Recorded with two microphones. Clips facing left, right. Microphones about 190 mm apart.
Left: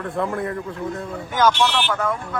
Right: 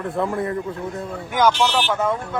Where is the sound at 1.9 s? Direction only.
25° right (ahead or behind).